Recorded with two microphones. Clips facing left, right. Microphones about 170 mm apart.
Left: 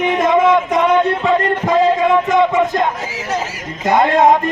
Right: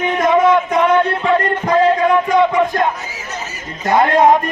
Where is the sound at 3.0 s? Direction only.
90° left.